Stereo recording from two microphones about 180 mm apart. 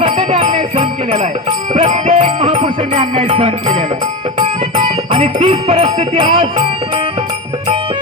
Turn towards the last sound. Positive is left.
turn(degrees=-30)  # may be behind; listen again after turning